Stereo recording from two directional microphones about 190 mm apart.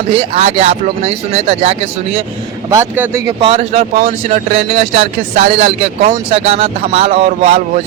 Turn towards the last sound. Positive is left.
turn(degrees=-35)  # may be behind; listen again after turning